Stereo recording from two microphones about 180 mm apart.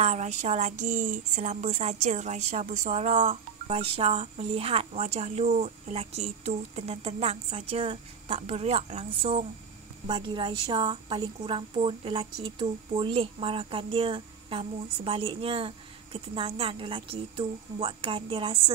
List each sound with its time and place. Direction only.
0.0 s speech: 40° right (ahead or behind)